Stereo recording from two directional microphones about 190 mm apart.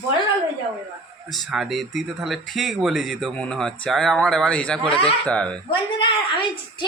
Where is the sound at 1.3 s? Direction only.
Centre (ahead or behind).